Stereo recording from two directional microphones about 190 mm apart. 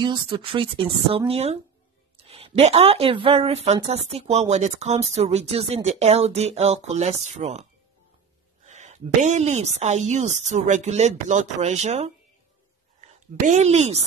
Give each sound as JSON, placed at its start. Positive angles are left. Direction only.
{"t": 0.0, "sound": "speech", "side_deg": -25}
{"t": 8.6, "sound": "a woman's voice", "side_deg": -40}